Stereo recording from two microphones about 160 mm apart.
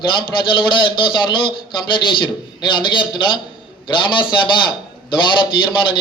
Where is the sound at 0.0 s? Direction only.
30° left (ahead or behind).